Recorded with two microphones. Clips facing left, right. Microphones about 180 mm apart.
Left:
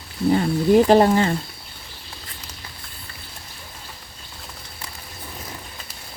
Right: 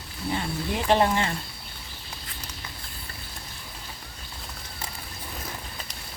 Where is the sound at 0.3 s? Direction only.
40° left (ahead or behind).